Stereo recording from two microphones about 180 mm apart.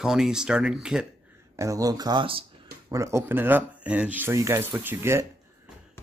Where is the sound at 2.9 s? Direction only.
15° right (ahead or behind).